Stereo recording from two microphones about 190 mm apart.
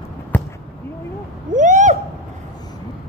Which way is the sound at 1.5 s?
40° right (ahead or behind).